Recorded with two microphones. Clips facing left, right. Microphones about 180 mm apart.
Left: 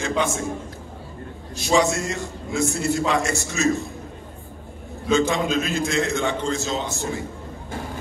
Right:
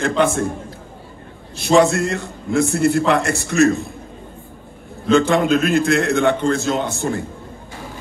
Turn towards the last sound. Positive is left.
turn(degrees=-60)  # may be behind; listen again after turning